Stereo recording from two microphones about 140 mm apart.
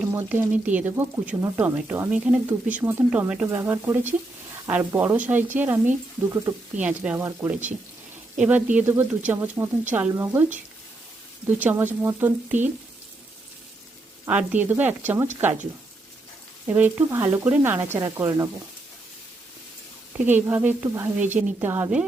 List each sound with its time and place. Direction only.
0.1 s speech: 15° right (ahead or behind)
14.3 s speech: 10° right (ahead or behind)
16.6 s speech: 15° right (ahead or behind)
20.1 s speech: 10° right (ahead or behind)